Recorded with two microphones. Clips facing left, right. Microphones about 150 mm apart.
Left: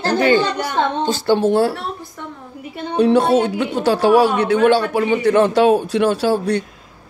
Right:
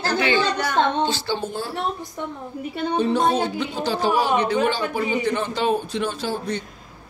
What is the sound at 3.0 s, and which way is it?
A woman's voice, 75° left (ahead or behind).